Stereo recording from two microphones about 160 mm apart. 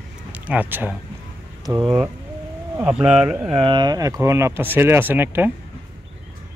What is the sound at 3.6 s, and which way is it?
Speech, 30° right (ahead or behind).